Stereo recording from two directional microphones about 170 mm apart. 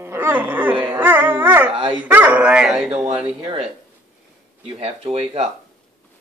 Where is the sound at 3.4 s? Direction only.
35° right (ahead or behind).